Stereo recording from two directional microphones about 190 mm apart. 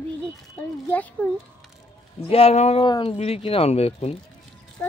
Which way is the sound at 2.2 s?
30° left (ahead or behind).